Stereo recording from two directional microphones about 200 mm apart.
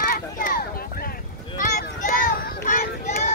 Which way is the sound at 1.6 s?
40° left (ahead or behind).